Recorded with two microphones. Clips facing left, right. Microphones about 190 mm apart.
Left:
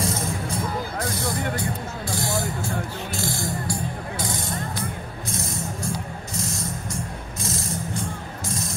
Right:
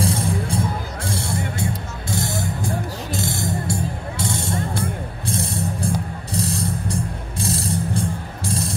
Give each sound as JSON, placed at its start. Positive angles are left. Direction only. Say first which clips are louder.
{"t": 0.0, "sound": "music", "louder": "right 4 dB", "side_deg": -30}